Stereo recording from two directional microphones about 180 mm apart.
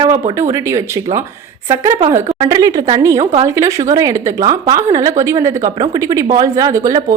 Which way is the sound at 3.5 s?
15° right (ahead or behind).